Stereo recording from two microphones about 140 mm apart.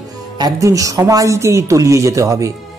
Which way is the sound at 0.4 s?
25° right (ahead or behind).